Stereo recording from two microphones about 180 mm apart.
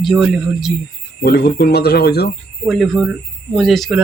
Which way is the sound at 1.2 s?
60° left (ahead or behind).